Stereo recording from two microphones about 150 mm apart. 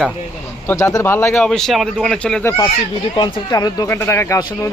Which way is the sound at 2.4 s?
15° left (ahead or behind).